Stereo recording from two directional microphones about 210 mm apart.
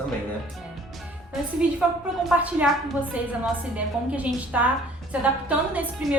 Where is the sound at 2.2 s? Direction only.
5° right (ahead or behind).